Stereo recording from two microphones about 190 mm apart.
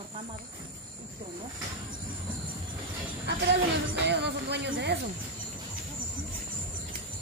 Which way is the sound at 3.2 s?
60° right (ahead or behind).